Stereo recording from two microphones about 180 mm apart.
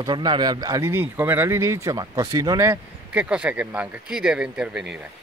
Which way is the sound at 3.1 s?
5° right (ahead or behind).